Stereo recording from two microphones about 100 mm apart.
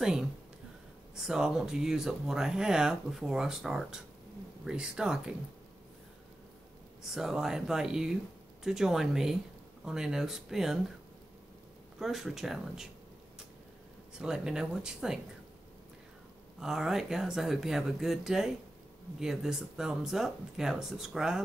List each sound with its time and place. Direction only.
0.0 s a woman's voice: 5° right (ahead or behind)
7.0 s speech: 5° right (ahead or behind)
12.0 s speech: 5° right (ahead or behind)
14.1 s speech: 5° right (ahead or behind)
16.5 s speech: 5° right (ahead or behind)